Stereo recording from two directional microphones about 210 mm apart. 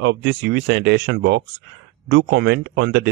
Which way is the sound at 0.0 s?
55° right (ahead or behind).